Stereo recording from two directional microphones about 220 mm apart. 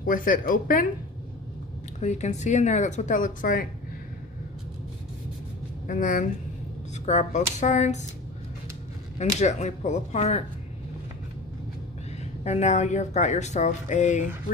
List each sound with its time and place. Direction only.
0.0 s speech: 40° left (ahead or behind)
2.0 s speech: 30° left (ahead or behind)
5.9 s speech: 35° left (ahead or behind)
9.4 s speech: 30° left (ahead or behind)
12.4 s speech: 30° left (ahead or behind)